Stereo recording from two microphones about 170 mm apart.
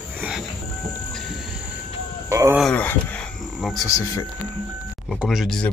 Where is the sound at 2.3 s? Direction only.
15° right (ahead or behind).